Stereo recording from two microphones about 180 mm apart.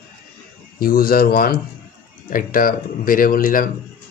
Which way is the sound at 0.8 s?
55° left (ahead or behind).